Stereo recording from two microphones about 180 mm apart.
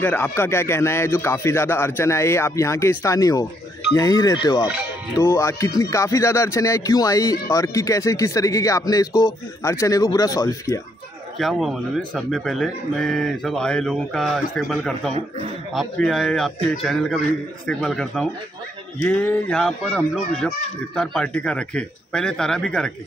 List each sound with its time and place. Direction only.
0.0 s speech: 15° left (ahead or behind)
4.6 s speech: 5° right (ahead or behind)
5.1 s speech: 20° left (ahead or behind)
11.3 s speech: centre (ahead or behind)